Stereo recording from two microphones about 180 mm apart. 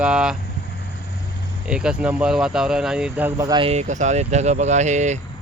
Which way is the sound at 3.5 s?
30° right (ahead or behind).